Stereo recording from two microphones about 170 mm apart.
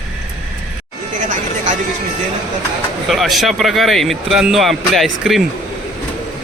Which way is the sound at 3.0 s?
Centre (ahead or behind).